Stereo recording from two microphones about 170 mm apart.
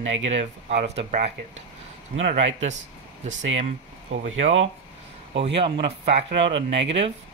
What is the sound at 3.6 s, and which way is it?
Speech, 45° right (ahead or behind).